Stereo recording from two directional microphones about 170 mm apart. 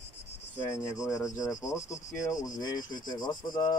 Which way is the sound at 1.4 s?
20° left (ahead or behind).